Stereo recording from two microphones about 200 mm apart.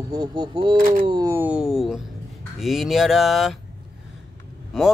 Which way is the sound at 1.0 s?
20° right (ahead or behind).